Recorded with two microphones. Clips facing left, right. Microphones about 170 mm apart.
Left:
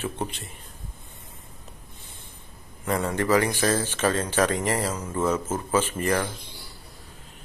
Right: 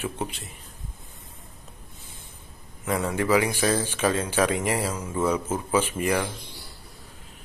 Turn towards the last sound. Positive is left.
turn(degrees=-10)  # may be behind; listen again after turning